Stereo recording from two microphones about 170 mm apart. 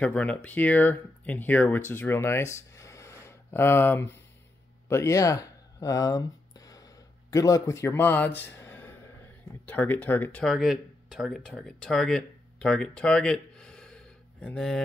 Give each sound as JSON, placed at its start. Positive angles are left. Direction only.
{"t": 0.0, "sound": "speech", "side_deg": 5}
{"t": 7.2, "sound": "a man's voice", "side_deg": 20}